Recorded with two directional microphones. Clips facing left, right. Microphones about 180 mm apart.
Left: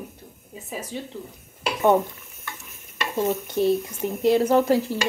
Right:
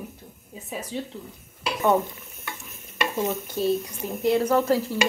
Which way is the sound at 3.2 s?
15° left (ahead or behind).